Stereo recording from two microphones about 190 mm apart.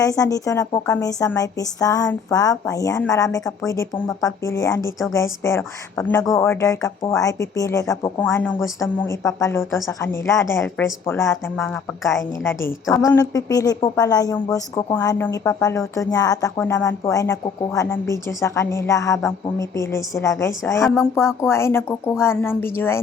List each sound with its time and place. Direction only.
0.0 s a woman's voice: 20° left (ahead or behind)